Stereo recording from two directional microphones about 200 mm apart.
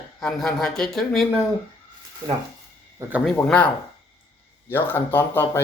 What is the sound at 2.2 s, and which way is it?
Speech, 20° right (ahead or behind).